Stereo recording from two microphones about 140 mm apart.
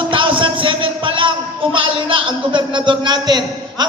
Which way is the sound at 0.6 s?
35° right (ahead or behind).